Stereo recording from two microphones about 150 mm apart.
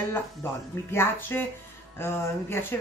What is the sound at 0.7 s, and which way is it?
Speech, 15° left (ahead or behind).